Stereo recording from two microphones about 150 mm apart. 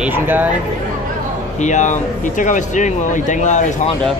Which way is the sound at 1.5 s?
55° left (ahead or behind).